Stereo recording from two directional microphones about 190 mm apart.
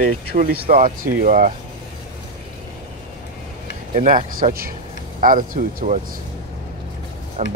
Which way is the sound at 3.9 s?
40° right (ahead or behind).